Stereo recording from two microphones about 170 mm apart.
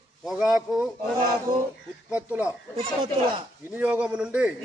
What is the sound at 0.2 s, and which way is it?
Speech, centre (ahead or behind).